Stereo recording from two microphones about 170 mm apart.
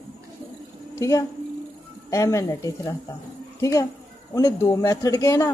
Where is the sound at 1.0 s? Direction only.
20° left (ahead or behind).